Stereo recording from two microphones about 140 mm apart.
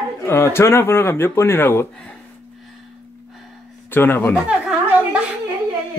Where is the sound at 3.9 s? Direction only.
15° left (ahead or behind).